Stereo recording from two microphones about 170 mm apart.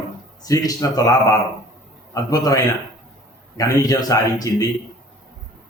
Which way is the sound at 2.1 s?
20° left (ahead or behind).